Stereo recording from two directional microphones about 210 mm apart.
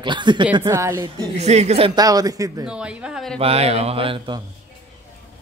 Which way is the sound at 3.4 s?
30° right (ahead or behind).